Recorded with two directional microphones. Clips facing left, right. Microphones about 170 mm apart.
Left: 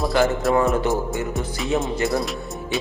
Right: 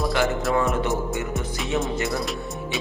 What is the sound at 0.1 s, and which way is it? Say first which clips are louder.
Speech: left 4 dB; 35° left (ahead or behind).